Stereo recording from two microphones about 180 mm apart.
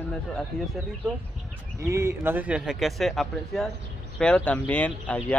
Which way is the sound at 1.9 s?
15° right (ahead or behind).